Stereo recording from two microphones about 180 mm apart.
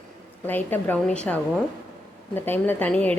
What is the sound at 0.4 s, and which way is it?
A woman's voice, 10° left (ahead or behind).